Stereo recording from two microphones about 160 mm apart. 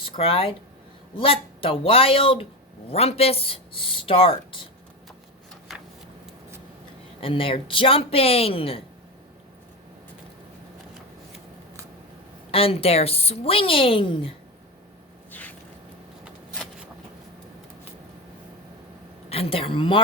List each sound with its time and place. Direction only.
0.0 s a woman's voice: 35° left (ahead or behind)
7.2 s a woman's voice: 35° left (ahead or behind)
12.5 s a woman's voice: 35° left (ahead or behind)
15.3 s a sound: 10° left (ahead or behind)
16.2 s shuffling cards: 5° right (ahead or behind)
19.3 s a woman's voice: 35° left (ahead or behind)